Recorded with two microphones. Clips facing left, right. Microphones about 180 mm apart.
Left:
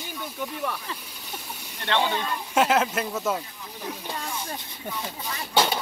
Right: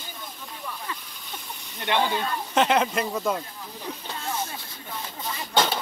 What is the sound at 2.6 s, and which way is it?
Speech, 5° left (ahead or behind).